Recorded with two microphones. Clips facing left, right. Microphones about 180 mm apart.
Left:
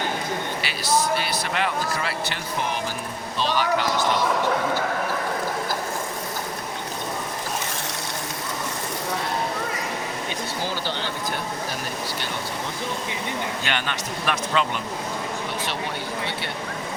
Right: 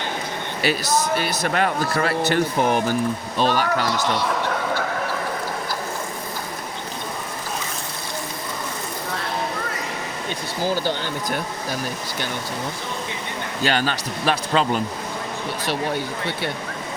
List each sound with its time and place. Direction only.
0.6 s speech: 45° right (ahead or behind)
13.7 s speech: 35° right (ahead or behind)